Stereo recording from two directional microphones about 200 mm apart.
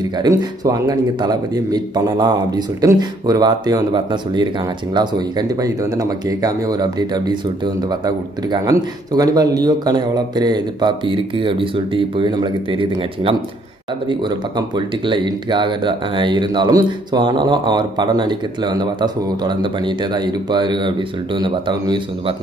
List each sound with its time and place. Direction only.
0.2 s speech: 20° right (ahead or behind)
15.0 s speech: 20° right (ahead or behind)